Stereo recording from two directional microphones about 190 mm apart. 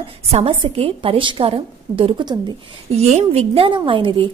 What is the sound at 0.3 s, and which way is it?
A woman's voice, 30° right (ahead or behind).